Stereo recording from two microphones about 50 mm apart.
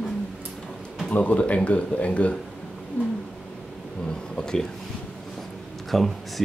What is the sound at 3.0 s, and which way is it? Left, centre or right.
Cat, left.